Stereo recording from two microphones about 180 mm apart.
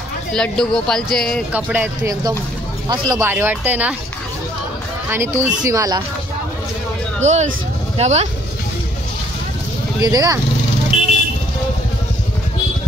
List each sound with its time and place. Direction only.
0.3 s speech: 5° left (ahead or behind)
1.5 s speech: 10° right (ahead or behind)
5.1 s speech: 15° right (ahead or behind)
7.2 s speech: 40° right (ahead or behind)
10.0 s speech: 20° right (ahead or behind)
10.9 s vehicle: 35° left (ahead or behind)